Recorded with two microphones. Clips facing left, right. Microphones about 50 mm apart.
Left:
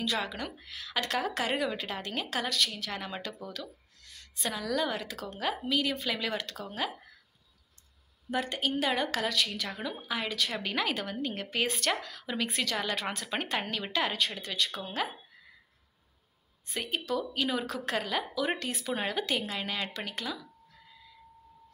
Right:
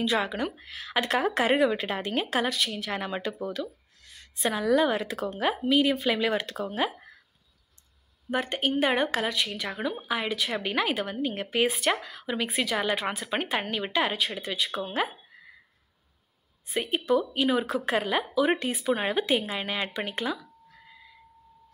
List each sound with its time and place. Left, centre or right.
0.0 s speech: right
8.3 s speech: right
16.8 s speech: right